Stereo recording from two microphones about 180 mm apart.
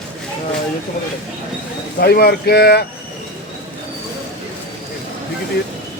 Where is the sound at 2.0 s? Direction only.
60° left (ahead or behind).